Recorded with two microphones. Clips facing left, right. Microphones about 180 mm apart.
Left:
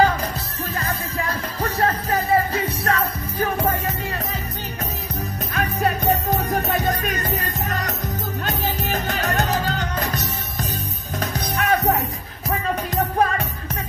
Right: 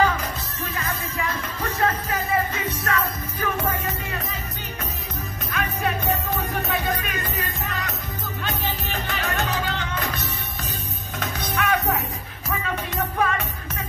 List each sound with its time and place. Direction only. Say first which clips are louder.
0.7 s music: left 3 dB; 35° left (ahead or behind)
5.5 s music: left 3 dB; 40° left (ahead or behind)